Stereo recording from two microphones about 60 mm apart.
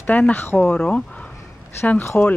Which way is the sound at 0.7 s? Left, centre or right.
Centre.